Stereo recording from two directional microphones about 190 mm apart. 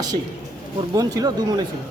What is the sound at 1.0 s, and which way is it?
Speech, 20° right (ahead or behind).